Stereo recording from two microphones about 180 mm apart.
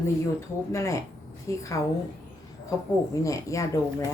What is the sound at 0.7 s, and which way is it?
Speech, 15° left (ahead or behind).